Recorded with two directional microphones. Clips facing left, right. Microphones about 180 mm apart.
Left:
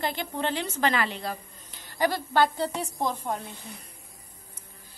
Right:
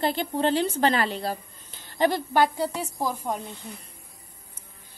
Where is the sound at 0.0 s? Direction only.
30° right (ahead or behind); by 3.4 s 10° right (ahead or behind).